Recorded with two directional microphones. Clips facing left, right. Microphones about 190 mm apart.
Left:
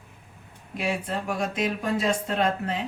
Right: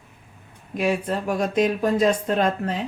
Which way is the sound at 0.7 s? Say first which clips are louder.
Right 5 dB; 45° right (ahead or behind).